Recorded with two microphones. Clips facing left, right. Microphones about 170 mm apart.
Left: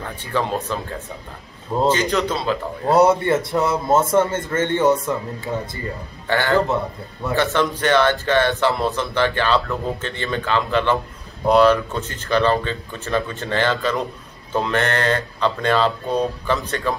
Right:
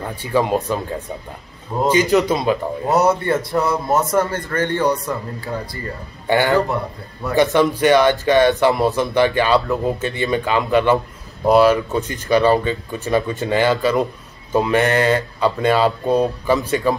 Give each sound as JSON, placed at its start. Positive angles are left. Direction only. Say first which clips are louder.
{"t": 0.0, "sound": "speech", "louder": "right 5 dB", "side_deg": -10}
{"t": 1.8, "sound": "speech", "louder": "right 4 dB", "side_deg": -10}
{"t": 2.9, "sound": "a man's voice", "louder": "left 2 dB", "side_deg": 25}
{"t": 6.2, "sound": "speech", "louder": "right 3 dB", "side_deg": -15}
{"t": 7.6, "sound": "speech", "louder": "right 4 dB", "side_deg": -10}